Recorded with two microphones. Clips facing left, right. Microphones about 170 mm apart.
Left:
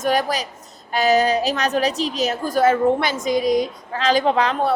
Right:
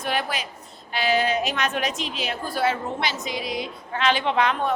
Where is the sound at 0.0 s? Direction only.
40° left (ahead or behind).